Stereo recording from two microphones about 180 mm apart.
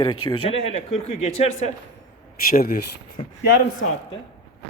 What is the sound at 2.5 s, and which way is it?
Speech, 55° left (ahead or behind).